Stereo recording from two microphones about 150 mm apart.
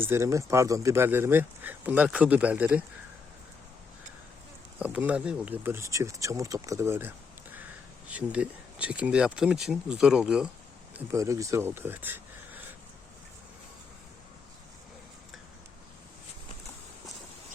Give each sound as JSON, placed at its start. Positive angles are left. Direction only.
{"t": 0.0, "sound": "speech", "side_deg": -15}
{"t": 4.8, "sound": "speech", "side_deg": -10}
{"t": 11.1, "sound": "speech", "side_deg": -20}